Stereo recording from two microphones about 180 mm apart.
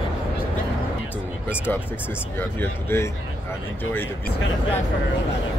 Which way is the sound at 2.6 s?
15° left (ahead or behind).